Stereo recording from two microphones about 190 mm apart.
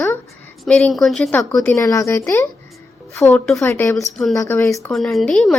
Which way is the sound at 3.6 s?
15° left (ahead or behind).